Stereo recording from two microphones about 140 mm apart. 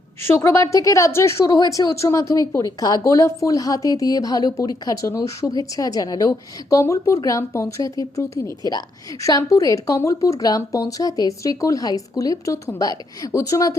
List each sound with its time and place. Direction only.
0.3 s a woman's voice: 20° left (ahead or behind)